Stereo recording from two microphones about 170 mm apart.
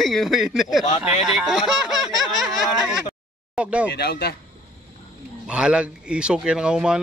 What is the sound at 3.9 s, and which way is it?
Speech, 70° left (ahead or behind).